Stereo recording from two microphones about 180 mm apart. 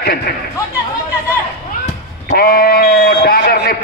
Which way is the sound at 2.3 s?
55° left (ahead or behind).